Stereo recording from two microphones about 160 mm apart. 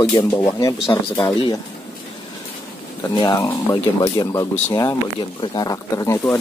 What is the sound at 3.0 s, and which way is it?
Speech, 25° left (ahead or behind).